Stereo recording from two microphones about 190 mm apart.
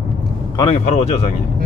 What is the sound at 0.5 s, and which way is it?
Speech, 25° left (ahead or behind).